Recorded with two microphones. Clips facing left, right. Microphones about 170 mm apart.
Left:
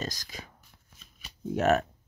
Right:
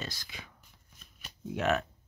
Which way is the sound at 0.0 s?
40° left (ahead or behind).